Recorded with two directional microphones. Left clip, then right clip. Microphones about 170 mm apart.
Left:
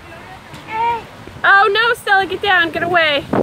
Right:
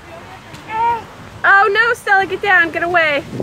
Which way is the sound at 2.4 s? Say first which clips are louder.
Right 1 dB; 15° left (ahead or behind).